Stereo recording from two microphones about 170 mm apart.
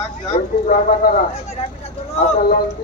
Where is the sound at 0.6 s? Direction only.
60° left (ahead or behind).